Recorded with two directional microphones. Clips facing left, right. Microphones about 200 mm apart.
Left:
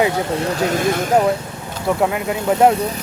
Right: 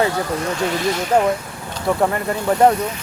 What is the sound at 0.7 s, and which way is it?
Speech, 50° left (ahead or behind).